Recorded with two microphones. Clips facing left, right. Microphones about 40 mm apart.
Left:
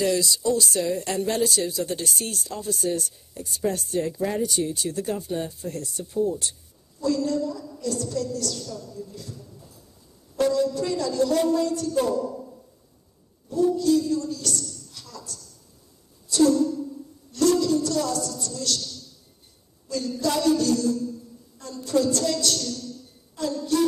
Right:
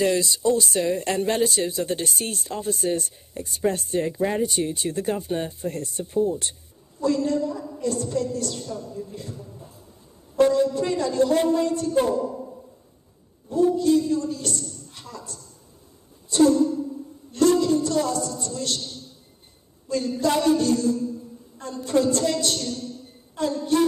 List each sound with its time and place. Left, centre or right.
0.0 s speech: right
13.5 s a man's voice: right
16.3 s a sound: right
19.9 s a man's voice: right